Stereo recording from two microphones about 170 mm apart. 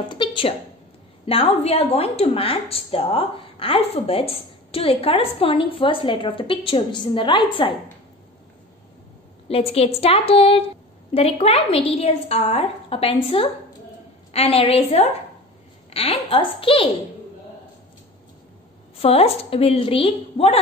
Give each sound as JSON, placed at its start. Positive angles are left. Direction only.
{"t": 0.1, "sound": "a woman's voice", "side_deg": 30}
{"t": 9.5, "sound": "a woman's voice", "side_deg": 35}
{"t": 18.9, "sound": "a woman's voice", "side_deg": 35}